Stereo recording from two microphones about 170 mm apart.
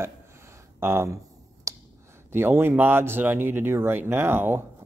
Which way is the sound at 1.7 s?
20° right (ahead or behind).